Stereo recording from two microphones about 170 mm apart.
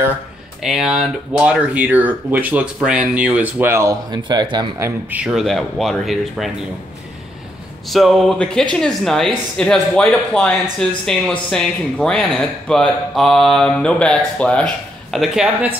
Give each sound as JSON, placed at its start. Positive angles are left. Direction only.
{"t": 0.6, "sound": "speech", "side_deg": 0}
{"t": 4.2, "sound": "speech", "side_deg": -25}
{"t": 4.8, "sound": "speech", "side_deg": -5}
{"t": 7.9, "sound": "speech", "side_deg": 0}